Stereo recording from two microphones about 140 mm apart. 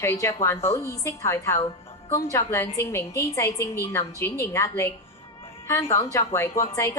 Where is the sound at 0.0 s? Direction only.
20° left (ahead or behind).